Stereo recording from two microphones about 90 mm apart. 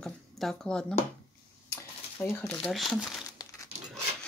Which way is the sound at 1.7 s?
25° left (ahead or behind).